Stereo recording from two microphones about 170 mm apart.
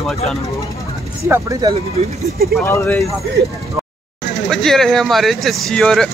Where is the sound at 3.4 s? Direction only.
80° right.